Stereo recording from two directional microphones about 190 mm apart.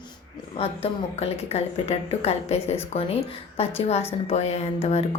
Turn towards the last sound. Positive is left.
turn(degrees=35)  # may be behind; listen again after turning